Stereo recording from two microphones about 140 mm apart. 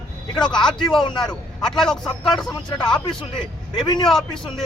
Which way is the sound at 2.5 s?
30° left (ahead or behind).